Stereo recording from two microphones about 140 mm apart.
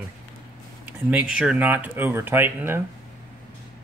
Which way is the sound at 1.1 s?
5° right (ahead or behind).